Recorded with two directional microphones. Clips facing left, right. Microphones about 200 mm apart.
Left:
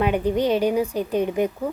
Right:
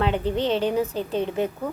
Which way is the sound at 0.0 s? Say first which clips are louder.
Left 3 dB; 15° left (ahead or behind).